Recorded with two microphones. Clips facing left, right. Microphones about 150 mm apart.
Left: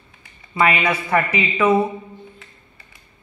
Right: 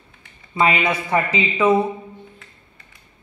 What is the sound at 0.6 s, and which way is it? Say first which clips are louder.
Speech: even; 20° right (ahead or behind).